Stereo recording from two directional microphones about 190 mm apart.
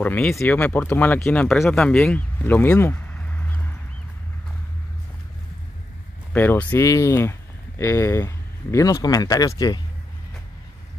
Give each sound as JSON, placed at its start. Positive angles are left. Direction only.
{"t": 0.0, "sound": "speech", "side_deg": 5}
{"t": 6.3, "sound": "speech", "side_deg": 10}